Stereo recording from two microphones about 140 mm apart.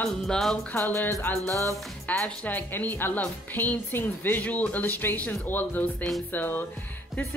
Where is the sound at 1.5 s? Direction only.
25° right (ahead or behind).